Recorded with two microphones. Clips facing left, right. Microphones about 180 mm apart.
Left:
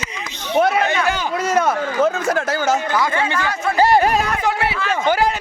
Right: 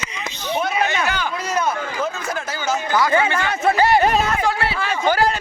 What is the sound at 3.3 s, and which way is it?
Speech, 25° right (ahead or behind).